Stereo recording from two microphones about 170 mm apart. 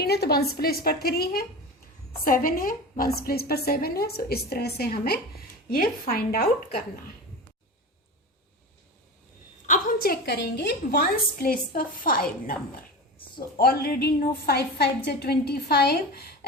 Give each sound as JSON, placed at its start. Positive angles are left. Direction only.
{"t": 0.0, "sound": "a woman's voice", "side_deg": 70}
{"t": 9.6, "sound": "a woman's voice", "side_deg": 50}
{"t": 13.6, "sound": "a woman's voice", "side_deg": 65}